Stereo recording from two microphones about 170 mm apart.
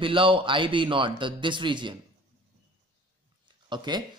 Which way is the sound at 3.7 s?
25° right (ahead or behind).